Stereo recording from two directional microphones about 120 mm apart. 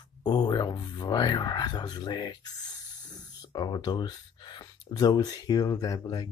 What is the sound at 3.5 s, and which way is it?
Speech, 35° left (ahead or behind).